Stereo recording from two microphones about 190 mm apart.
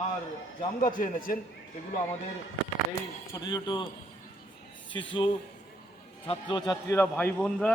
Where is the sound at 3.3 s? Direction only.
20° left (ahead or behind).